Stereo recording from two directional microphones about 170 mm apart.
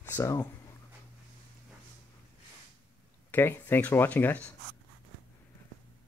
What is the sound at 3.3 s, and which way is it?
Speech, 10° left (ahead or behind).